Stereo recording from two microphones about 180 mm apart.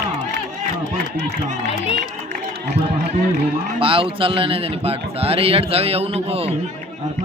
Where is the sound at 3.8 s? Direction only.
30° right (ahead or behind).